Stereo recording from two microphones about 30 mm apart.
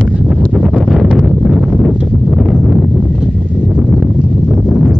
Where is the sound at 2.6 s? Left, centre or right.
Right.